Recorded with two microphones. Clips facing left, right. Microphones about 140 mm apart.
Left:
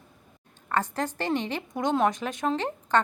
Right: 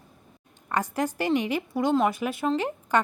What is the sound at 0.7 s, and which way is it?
A woman's voice, 10° right (ahead or behind).